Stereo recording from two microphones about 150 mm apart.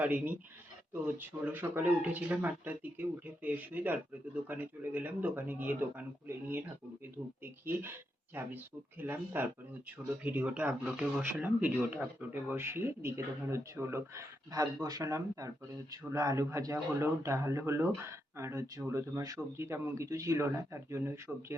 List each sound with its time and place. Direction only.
0.0 s speech: 10° right (ahead or behind)
21.3 s speech: 5° right (ahead or behind)